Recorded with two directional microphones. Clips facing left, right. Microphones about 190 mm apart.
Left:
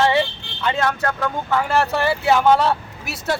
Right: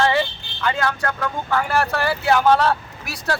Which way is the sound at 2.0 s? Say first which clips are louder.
Even; 25° left (ahead or behind).